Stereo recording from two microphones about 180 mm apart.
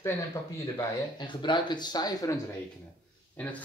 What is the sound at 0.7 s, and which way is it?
Speech, 25° left (ahead or behind).